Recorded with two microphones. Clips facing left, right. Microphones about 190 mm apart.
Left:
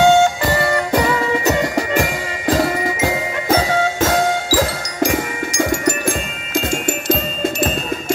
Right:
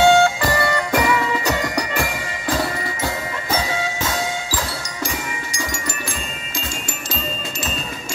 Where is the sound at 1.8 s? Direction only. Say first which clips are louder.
Left 5 dB; 45° left (ahead or behind).